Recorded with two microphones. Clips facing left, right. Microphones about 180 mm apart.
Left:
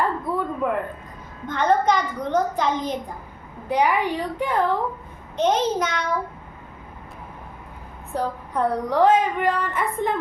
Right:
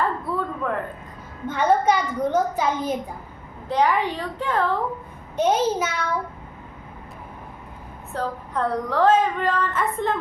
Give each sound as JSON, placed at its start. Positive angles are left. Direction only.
{"t": 0.0, "sound": "a sound", "side_deg": 15}
{"t": 1.5, "sound": "a woman's voice", "side_deg": -10}
{"t": 3.7, "sound": "a woman's voice", "side_deg": 10}
{"t": 5.4, "sound": "a woman's voice", "side_deg": -10}
{"t": 8.1, "sound": "a woman's voice", "side_deg": 15}